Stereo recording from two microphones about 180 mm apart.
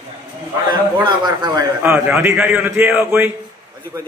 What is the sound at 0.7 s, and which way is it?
A man's voice, 25° right (ahead or behind).